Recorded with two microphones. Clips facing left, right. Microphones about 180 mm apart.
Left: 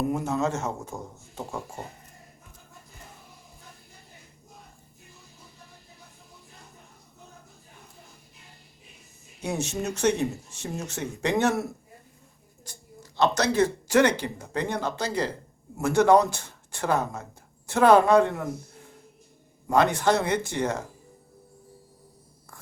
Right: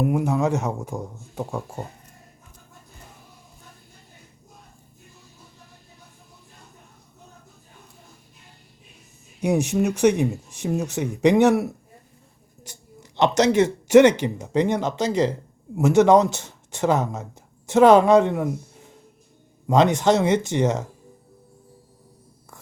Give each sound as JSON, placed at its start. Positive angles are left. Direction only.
{"t": 0.0, "sound": "speech", "side_deg": -10}
{"t": 9.4, "sound": "speech", "side_deg": -15}
{"t": 12.6, "sound": "a sound", "side_deg": -20}
{"t": 14.0, "sound": "a woman's voice", "side_deg": -20}